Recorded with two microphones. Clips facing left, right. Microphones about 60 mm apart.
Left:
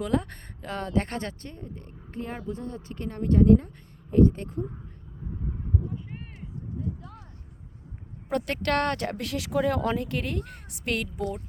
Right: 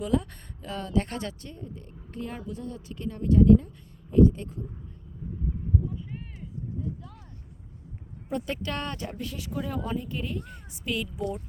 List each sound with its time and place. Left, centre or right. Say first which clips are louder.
0.0 s speech: even; left
8.3 s speech: left 5 dB; left